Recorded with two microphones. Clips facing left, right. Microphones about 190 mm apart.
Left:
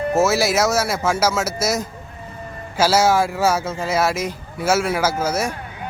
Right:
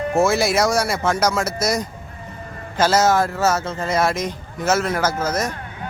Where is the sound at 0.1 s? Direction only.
5° left (ahead or behind).